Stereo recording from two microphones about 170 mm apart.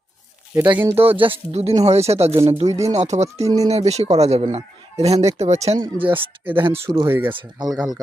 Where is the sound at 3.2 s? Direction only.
20° right (ahead or behind).